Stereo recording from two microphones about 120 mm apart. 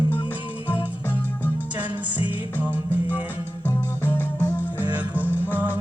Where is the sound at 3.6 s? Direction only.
20° left (ahead or behind).